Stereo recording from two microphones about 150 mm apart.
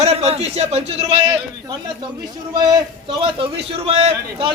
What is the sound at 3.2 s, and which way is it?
A man's voice, 40° right (ahead or behind).